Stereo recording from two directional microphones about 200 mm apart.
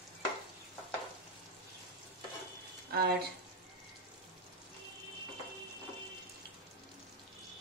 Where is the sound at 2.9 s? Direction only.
50° right (ahead or behind).